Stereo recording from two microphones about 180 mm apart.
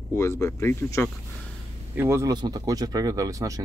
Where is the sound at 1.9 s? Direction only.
15° right (ahead or behind).